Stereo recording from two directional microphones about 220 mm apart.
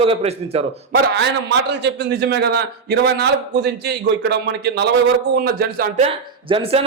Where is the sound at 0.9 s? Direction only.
50° right (ahead or behind).